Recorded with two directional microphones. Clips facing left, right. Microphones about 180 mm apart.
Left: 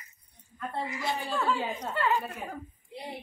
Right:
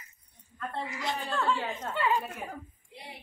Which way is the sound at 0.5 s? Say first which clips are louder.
Left 2 dB; 10° left (ahead or behind).